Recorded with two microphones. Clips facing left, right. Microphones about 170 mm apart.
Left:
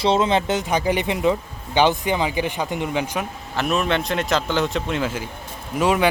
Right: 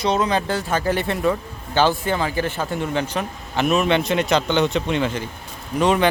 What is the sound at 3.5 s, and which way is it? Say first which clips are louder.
A man's voice: right 3 dB; centre (ahead or behind).